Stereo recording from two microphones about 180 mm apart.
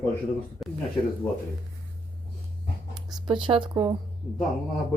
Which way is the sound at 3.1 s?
25° right (ahead or behind).